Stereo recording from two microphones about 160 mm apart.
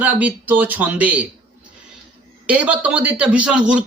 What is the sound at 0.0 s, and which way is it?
Speech, 10° right (ahead or behind).